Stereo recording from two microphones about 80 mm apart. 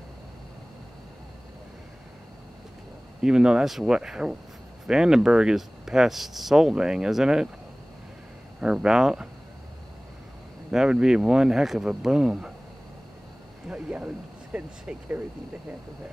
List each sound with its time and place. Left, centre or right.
3.2 s speech: centre
8.5 s speech: centre
10.7 s speech: centre
13.7 s speech: centre